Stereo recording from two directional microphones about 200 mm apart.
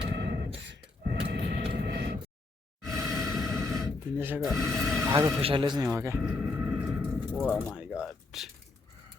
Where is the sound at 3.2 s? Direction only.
Centre (ahead or behind).